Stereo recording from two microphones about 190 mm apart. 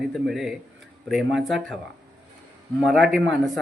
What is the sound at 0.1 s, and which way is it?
A man's voice, centre (ahead or behind).